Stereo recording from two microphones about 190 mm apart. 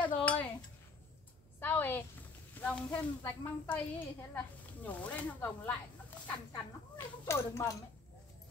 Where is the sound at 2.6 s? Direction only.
10° left (ahead or behind).